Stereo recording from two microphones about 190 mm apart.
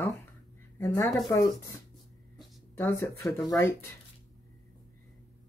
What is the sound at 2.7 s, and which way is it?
Speech, 15° left (ahead or behind).